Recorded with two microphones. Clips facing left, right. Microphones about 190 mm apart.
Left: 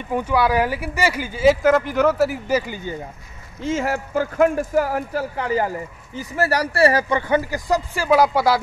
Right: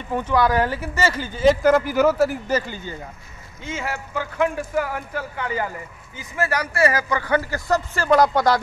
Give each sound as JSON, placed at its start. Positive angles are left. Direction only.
{"t": 0.1, "sound": "speech", "side_deg": 10}
{"t": 3.6, "sound": "speech", "side_deg": 40}